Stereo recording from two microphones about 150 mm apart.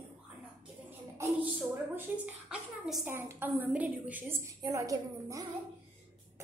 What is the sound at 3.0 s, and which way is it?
A woman's voice, 15° right (ahead or behind).